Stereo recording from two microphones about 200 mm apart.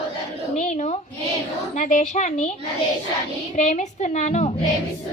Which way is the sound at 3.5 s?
35° left (ahead or behind).